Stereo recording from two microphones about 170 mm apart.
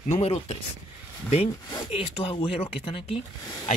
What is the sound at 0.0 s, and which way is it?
Speech, 40° left (ahead or behind).